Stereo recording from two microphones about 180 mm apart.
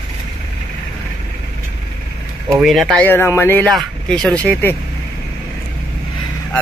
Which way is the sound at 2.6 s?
Centre (ahead or behind).